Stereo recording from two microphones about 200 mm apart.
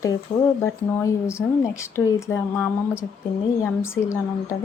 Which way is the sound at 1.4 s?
15° left (ahead or behind).